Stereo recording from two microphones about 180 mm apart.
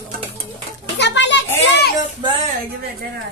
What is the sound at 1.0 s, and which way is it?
Children playing, 75° left (ahead or behind).